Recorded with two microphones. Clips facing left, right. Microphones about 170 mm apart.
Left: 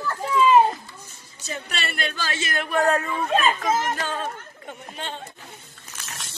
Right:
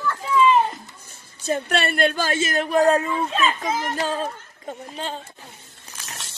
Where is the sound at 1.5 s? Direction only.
55° right (ahead or behind); by 3.0 s 35° right (ahead or behind).